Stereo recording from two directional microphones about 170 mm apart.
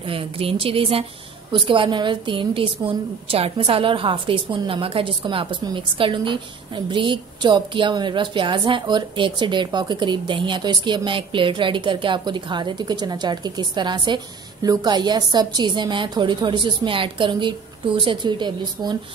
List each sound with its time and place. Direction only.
0.0 s a woman's voice: 30° right (ahead or behind)